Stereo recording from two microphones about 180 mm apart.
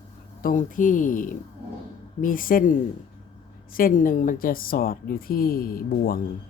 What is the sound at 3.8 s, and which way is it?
A woman's voice, 50° left (ahead or behind).